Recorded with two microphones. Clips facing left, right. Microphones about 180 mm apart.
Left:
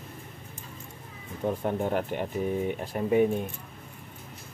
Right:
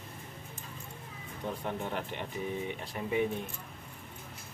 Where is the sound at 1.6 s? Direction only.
50° left (ahead or behind).